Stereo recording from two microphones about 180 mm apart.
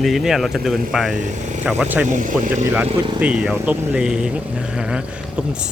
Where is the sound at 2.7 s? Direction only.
10° right (ahead or behind).